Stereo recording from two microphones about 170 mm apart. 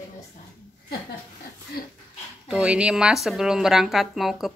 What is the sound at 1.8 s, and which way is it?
Speech, 60° left (ahead or behind).